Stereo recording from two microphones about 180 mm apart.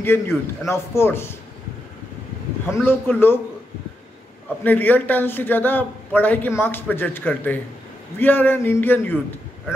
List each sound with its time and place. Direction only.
0.0 s a man's voice: 10° left (ahead or behind)
2.6 s a man's voice: 15° left (ahead or behind)
4.6 s a man's voice: 10° left (ahead or behind)